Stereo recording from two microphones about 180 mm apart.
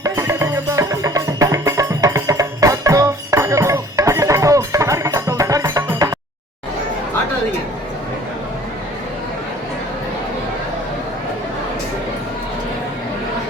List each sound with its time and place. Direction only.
0.0 s music: 15° right (ahead or behind)